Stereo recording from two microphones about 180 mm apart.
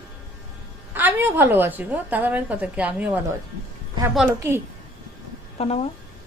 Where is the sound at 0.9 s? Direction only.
10° right (ahead or behind).